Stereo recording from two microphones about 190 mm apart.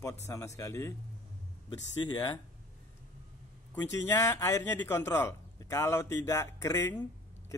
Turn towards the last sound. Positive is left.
turn(degrees=15)  # may be behind; listen again after turning